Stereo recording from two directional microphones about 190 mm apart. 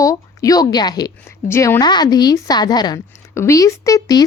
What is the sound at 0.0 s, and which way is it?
A woman's voice, 20° left (ahead or behind).